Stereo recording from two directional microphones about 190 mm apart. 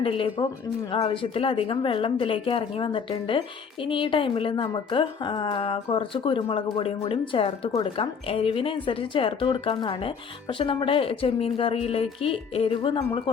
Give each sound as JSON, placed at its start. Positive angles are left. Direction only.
{"t": 0.0, "sound": "a woman's voice", "side_deg": 25}